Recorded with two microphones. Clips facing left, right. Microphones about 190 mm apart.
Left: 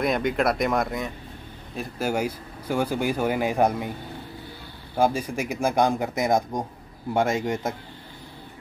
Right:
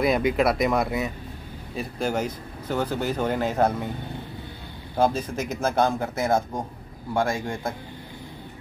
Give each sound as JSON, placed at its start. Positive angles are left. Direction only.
{"t": 0.0, "sound": "speech", "side_deg": -5}
{"t": 1.8, "sound": "speech", "side_deg": 5}
{"t": 4.9, "sound": "a man's voice", "side_deg": 10}